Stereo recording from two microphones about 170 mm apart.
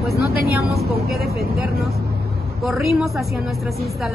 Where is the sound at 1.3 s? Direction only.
65° right (ahead or behind).